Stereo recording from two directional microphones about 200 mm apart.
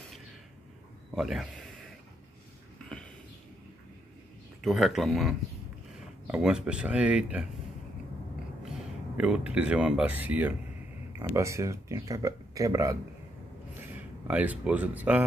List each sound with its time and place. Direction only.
1.1 s speech: centre (ahead or behind)
4.6 s speech: centre (ahead or behind)
8.6 s speech: 5° right (ahead or behind)